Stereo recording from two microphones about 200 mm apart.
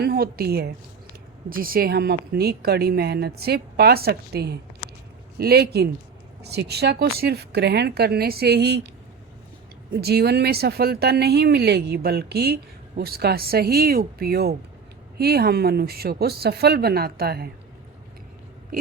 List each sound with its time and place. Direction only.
0.0 s a woman's voice: 50° right (ahead or behind)
9.9 s speech: 50° right (ahead or behind)